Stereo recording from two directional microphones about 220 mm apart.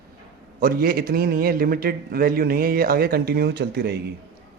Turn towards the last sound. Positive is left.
turn(degrees=-45)  # may be behind; listen again after turning